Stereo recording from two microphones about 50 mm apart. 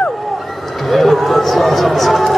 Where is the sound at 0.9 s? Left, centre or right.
Centre.